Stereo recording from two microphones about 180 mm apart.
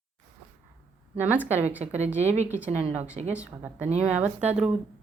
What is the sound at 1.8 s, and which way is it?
Speech, 40° right (ahead or behind).